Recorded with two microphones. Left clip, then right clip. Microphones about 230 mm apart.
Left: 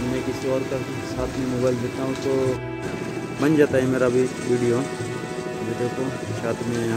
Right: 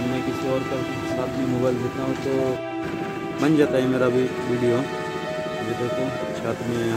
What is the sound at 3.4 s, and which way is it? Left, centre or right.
Speech, centre.